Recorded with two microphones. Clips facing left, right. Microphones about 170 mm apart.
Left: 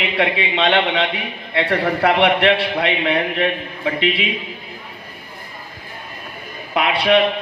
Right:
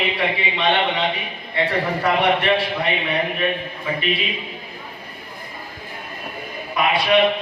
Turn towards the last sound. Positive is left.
turn(degrees=65)  # may be behind; listen again after turning